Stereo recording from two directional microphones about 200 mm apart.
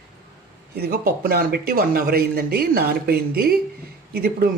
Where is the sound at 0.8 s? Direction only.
50° right (ahead or behind).